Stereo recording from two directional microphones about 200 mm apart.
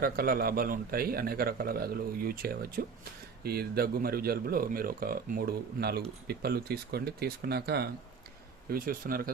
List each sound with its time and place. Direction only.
0.0 s a man's voice: 45° right (ahead or behind)